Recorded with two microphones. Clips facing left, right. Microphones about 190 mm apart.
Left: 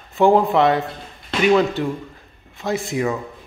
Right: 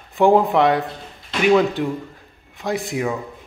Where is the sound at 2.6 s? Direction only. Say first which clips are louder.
Left 1 dB; 15° right (ahead or behind).